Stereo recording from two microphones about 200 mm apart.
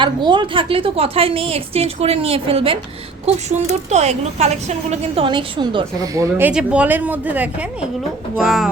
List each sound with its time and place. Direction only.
0.3 s a woman's voice: 25° right (ahead or behind); by 8.7 s centre (ahead or behind)